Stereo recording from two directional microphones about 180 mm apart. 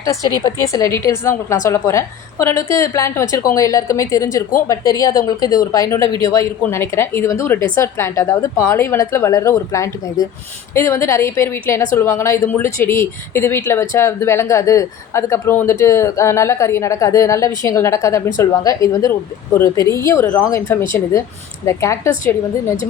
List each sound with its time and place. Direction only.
0.0 s a woman's voice: 20° left (ahead or behind)